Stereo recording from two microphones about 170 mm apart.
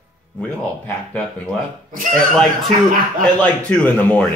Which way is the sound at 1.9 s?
50° right (ahead or behind).